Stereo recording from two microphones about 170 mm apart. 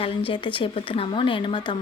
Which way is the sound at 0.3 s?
30° left (ahead or behind).